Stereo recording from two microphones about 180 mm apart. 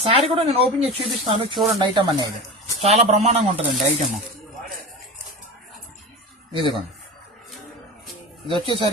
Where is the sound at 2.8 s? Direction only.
35° right (ahead or behind).